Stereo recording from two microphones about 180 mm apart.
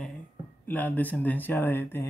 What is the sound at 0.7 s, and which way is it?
Speech, 10° left (ahead or behind).